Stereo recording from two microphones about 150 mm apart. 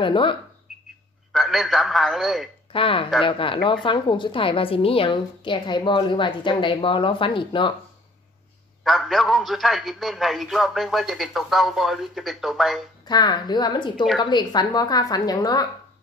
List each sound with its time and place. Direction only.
0.0 s a woman's voice: 35° left (ahead or behind)
1.3 s a man's voice: centre (ahead or behind)
2.7 s a woman's voice: 35° left (ahead or behind)
8.8 s a man's voice: centre (ahead or behind)
13.0 s a woman's voice: 25° left (ahead or behind)